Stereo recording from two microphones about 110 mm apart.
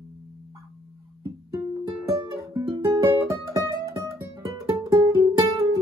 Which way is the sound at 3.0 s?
30° right (ahead or behind).